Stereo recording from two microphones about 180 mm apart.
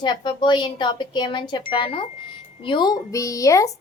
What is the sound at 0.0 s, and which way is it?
A woman's voice, 25° left (ahead or behind).